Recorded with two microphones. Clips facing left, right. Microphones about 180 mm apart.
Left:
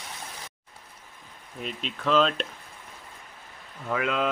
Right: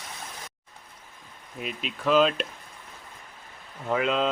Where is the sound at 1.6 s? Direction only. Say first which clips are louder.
Right 2 dB; 10° right (ahead or behind).